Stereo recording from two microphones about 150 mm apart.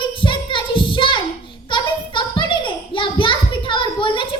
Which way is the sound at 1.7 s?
35° left (ahead or behind).